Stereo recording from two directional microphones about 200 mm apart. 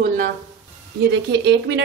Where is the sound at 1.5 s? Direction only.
60° right (ahead or behind).